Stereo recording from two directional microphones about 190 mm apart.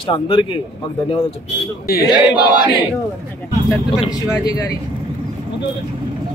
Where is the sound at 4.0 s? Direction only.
20° left (ahead or behind).